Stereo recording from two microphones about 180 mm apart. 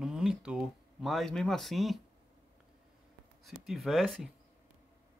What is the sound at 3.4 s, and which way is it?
Speech, centre (ahead or behind).